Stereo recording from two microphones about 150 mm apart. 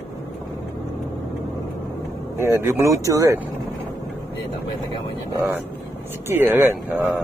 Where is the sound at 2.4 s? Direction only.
20° right (ahead or behind).